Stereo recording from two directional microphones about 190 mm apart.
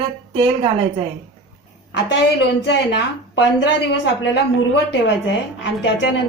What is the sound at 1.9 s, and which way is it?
A woman's voice, 65° left (ahead or behind).